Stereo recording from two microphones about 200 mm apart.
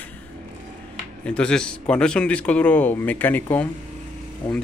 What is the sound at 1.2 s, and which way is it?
Speech, 5° left (ahead or behind).